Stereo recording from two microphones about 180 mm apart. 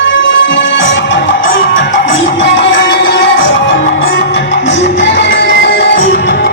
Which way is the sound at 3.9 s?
75° left (ahead or behind).